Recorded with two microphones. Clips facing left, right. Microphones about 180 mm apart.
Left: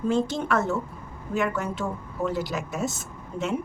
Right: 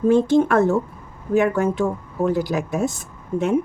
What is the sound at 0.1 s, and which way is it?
A woman's voice, 55° right (ahead or behind).